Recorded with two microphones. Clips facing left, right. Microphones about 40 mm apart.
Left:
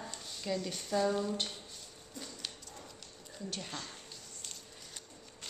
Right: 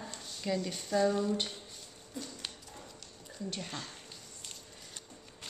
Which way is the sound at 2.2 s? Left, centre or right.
Centre.